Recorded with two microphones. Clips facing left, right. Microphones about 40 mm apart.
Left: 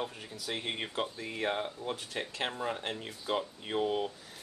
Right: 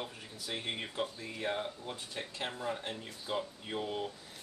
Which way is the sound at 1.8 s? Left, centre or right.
Left.